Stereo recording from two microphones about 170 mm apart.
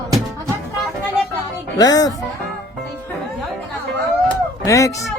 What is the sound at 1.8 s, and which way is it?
Speech, 20° left (ahead or behind).